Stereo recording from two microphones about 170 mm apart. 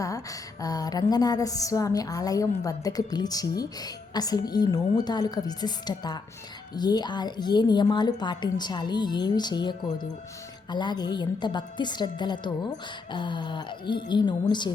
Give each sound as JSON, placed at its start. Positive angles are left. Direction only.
{"t": 0.0, "sound": "a woman's voice", "side_deg": 20}